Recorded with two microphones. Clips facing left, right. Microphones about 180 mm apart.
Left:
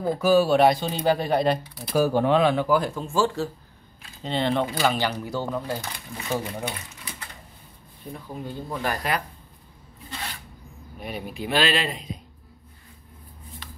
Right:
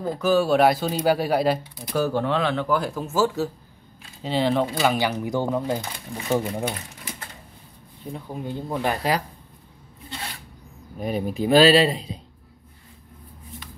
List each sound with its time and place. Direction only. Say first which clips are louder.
0.2 s speech: even; 5° left (ahead or behind)
1.9 s speech: left 3 dB; 10° left (ahead or behind)
2.8 s speech: right 1 dB; 5° right (ahead or behind); by 6.4 s 25° right (ahead or behind)
8.1 s speech: right 3 dB; 20° right (ahead or behind)
11.0 s speech: right 8 dB; 40° right (ahead or behind)